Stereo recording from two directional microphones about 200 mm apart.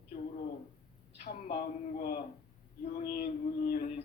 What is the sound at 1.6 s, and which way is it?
A woman's voice, 45° left (ahead or behind).